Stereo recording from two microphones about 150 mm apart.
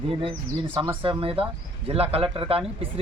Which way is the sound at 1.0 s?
35° right (ahead or behind).